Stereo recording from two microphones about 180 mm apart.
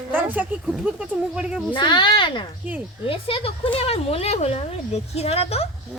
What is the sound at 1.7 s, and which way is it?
Speech, 25° left (ahead or behind).